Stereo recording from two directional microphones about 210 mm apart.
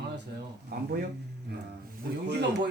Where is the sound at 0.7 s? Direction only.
45° right (ahead or behind).